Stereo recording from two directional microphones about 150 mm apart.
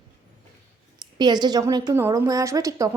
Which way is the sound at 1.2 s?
30° right (ahead or behind).